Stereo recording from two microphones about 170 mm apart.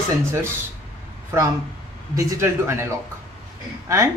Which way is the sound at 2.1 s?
15° right (ahead or behind).